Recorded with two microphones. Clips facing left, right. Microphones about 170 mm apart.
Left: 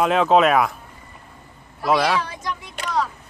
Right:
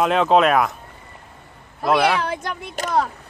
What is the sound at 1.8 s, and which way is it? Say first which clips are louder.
Speech: right 1 dB; centre (ahead or behind).